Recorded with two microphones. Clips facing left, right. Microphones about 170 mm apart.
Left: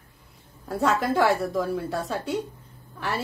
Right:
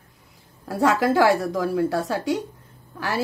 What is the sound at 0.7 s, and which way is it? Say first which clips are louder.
Speech: right 4 dB; 90° right.